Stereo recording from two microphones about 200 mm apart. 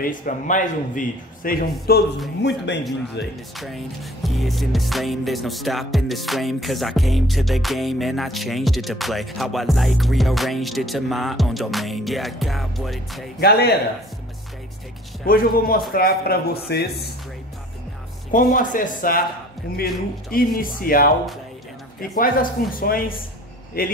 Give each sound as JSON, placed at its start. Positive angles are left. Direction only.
{"t": 0.0, "sound": "a man's voice", "side_deg": 40}
{"t": 2.4, "sound": "speech", "side_deg": 60}
{"t": 3.5, "sound": "music", "side_deg": 0}
{"t": 13.4, "sound": "a man's voice", "side_deg": 50}
{"t": 15.2, "sound": "a man's voice", "side_deg": 45}
{"t": 18.3, "sound": "a man's voice", "side_deg": 40}
{"t": 22.1, "sound": "a man's voice", "side_deg": 45}